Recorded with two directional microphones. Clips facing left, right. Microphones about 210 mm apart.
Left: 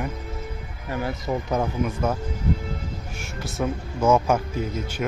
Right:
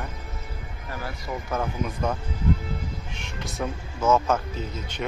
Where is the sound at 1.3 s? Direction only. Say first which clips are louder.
Left 6 dB; 35° left (ahead or behind).